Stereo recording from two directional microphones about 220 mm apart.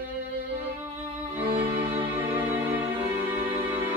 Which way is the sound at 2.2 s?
10° right (ahead or behind).